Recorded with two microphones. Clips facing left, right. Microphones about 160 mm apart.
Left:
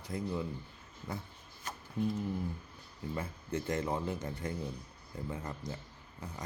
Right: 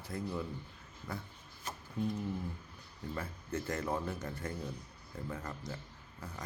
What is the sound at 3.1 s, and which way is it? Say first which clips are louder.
Speech: left 2 dB; 20° left (ahead or behind).